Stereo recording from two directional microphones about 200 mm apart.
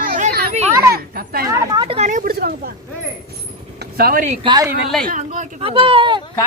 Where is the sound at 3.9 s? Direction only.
45° right (ahead or behind).